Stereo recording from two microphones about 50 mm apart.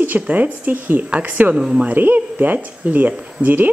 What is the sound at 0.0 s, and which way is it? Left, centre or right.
Speech, right.